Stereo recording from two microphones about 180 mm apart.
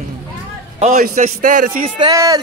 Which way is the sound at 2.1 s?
20° right (ahead or behind).